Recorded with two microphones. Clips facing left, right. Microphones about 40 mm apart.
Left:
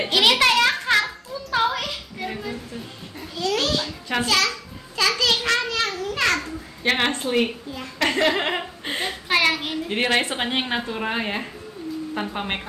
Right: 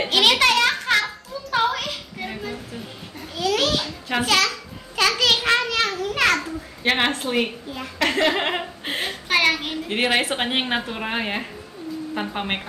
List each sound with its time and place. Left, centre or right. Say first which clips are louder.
0.0 s children playing: even; centre
1.8 s music: even; centre
3.3 s babbling: right 2 dB; centre
3.8 s a sound: right 1 dB; centre
5.0 s a sound: right 2 dB; right
5.7 s children playing: right 2 dB; centre
6.2 s babbling: right 2 dB; centre
7.7 s a sound: right 3 dB; centre
9.9 s a woman's voice: right 1 dB; centre